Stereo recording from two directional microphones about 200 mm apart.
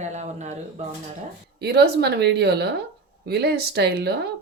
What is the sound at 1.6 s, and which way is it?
Speech, 55° right (ahead or behind).